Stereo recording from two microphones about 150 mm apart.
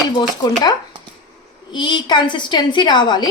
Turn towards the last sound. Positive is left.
turn(degrees=30)  # may be behind; listen again after turning